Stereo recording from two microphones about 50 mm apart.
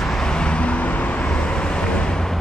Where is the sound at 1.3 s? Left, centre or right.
Centre.